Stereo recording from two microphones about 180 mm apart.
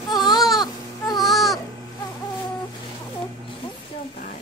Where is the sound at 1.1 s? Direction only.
Centre (ahead or behind).